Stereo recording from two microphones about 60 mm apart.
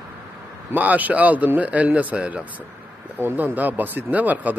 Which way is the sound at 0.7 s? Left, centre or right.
Right.